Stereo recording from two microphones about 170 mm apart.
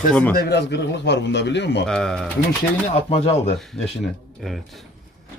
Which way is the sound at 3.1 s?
35° left (ahead or behind).